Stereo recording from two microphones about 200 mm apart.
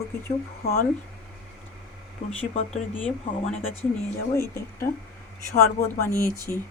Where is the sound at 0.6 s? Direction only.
50° left (ahead or behind).